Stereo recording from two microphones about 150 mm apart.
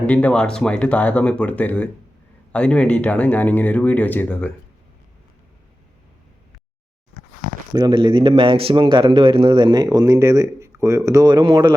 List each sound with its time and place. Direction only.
0.0 s speech: 10° left (ahead or behind)
7.7 s speech: 25° right (ahead or behind)